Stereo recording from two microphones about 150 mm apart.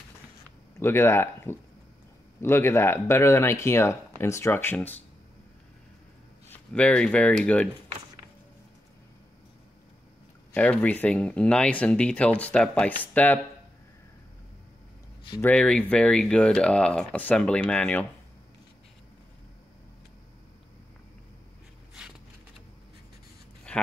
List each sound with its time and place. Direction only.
0.7 s speech: 15° left (ahead or behind)
6.5 s speech: 10° left (ahead or behind)
10.5 s speech: 10° left (ahead or behind)
15.4 s speech: 5° left (ahead or behind)